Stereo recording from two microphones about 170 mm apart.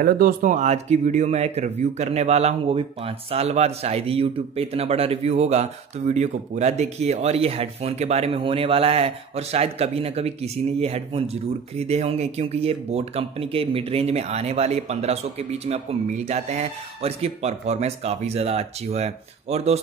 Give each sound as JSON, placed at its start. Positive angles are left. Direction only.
{"t": 0.0, "sound": "speech", "side_deg": -55}